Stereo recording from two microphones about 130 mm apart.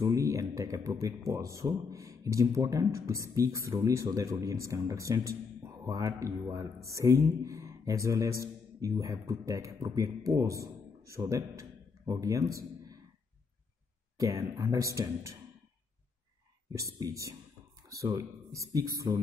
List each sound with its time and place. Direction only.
0.0 s a man's voice: 25° right (ahead or behind)
14.2 s a man's voice: 20° right (ahead or behind)
16.7 s a man's voice: 25° right (ahead or behind)